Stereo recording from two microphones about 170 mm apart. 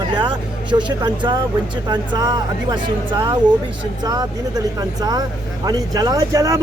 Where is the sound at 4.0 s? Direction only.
25° right (ahead or behind).